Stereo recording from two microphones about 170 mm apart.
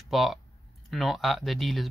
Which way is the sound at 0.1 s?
Centre (ahead or behind).